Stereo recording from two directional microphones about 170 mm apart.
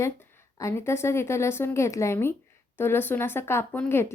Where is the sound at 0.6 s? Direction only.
15° left (ahead or behind).